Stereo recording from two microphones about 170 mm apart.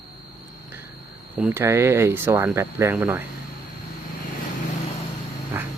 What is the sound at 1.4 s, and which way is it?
Speech, 10° right (ahead or behind).